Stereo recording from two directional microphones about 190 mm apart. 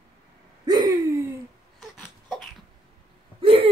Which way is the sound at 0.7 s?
20° right (ahead or behind).